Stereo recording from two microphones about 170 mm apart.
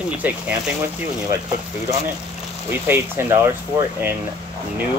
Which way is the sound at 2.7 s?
15° right (ahead or behind).